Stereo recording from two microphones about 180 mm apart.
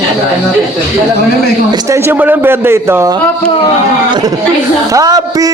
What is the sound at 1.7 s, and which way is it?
A man's voice, 15° right (ahead or behind).